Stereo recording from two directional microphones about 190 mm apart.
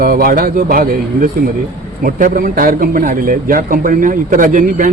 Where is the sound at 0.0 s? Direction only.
50° right (ahead or behind).